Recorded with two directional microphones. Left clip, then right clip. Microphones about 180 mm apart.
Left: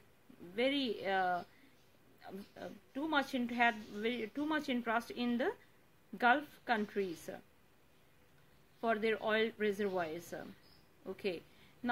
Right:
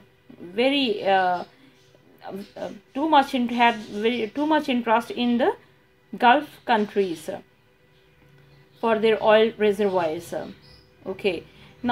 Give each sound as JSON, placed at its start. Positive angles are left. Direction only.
{"t": 0.6, "sound": "a woman's voice", "side_deg": 40}
{"t": 8.8, "sound": "a woman's voice", "side_deg": 40}